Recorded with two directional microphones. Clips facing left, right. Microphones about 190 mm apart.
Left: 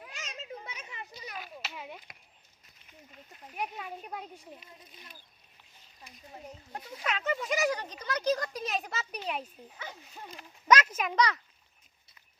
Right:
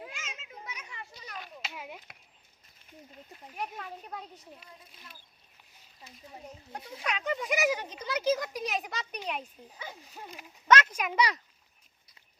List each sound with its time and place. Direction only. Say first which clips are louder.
0.1 s children playing: left 4 dB; 35° left (ahead or behind); by 1.3 s 20° left (ahead or behind)
1.6 s a child's voice: even; 5° right (ahead or behind)
3.5 s a child's voice: left 1 dB; 5° left (ahead or behind)
7.0 s speech: even; centre (ahead or behind)
9.7 s speech: right 1 dB; 10° right (ahead or behind)
10.7 s a child's voice: even; 10° left (ahead or behind)
11.1 s speech: left 1 dB; 10° right (ahead or behind)